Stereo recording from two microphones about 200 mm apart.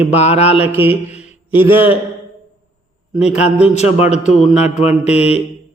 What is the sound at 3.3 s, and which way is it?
Speech, 30° left (ahead or behind).